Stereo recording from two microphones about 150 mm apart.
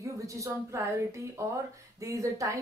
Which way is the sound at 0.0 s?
20° right (ahead or behind).